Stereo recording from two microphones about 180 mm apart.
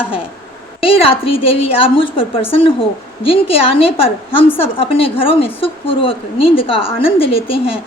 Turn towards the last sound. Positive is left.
turn(degrees=30)  # may be behind; listen again after turning